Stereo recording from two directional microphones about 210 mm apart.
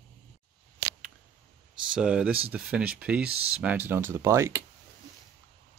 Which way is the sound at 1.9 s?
5° right (ahead or behind).